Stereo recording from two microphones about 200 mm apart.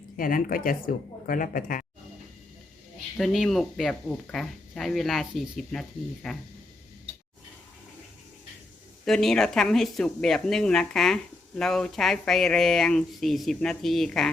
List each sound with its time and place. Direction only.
0.2 s speech: 45° left (ahead or behind)
3.2 s speech: centre (ahead or behind)
9.0 s speech: centre (ahead or behind)